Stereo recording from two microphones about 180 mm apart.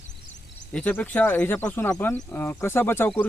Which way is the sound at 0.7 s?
5° left (ahead or behind).